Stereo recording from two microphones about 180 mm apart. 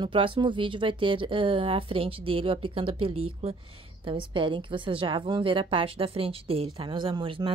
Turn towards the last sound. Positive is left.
turn(degrees=-25)  # may be behind; listen again after turning